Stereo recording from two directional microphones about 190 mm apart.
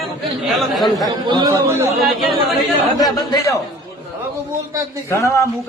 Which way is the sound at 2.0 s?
Centre (ahead or behind).